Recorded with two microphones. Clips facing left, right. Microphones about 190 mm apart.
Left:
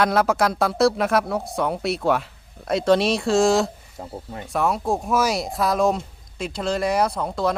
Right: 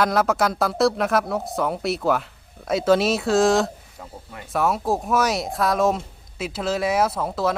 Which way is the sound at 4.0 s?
35° left (ahead or behind).